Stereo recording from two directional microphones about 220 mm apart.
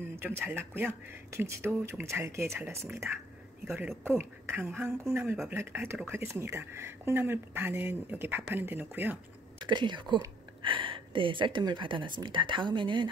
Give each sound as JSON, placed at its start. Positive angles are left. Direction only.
{"t": 0.1, "sound": "a woman's voice", "side_deg": -10}
{"t": 9.7, "sound": "speech", "side_deg": -20}